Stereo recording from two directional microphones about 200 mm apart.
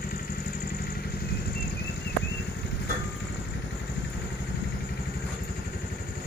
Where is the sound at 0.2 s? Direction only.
50° left (ahead or behind).